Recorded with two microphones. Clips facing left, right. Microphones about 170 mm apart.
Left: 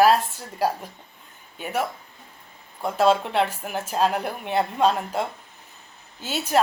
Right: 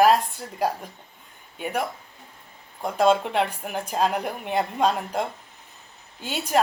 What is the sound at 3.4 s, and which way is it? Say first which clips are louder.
A woman's voice: left 1 dB; 5° left (ahead or behind).